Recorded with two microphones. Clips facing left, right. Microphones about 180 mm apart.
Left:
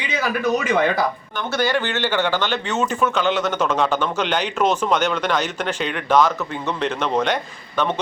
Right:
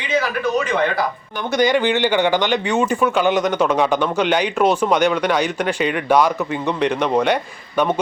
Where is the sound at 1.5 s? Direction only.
15° right (ahead or behind).